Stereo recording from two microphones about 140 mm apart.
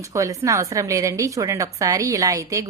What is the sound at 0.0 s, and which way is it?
A woman's voice, 25° right (ahead or behind).